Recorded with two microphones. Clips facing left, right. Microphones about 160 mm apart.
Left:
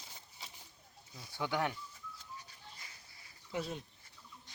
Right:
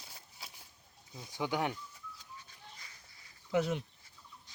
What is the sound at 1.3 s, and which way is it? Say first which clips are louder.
Speech: right 1 dB; 15° right (ahead or behind).